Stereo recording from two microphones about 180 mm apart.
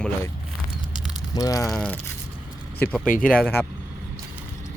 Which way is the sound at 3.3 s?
5° left (ahead or behind).